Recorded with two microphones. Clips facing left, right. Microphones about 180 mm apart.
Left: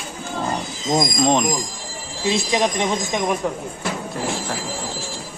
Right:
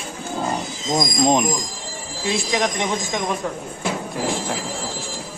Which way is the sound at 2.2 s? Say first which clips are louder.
Left 2 dB; 20° left (ahead or behind).